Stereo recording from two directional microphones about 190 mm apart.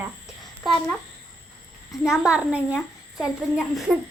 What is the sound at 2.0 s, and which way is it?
Speech, 5° right (ahead or behind).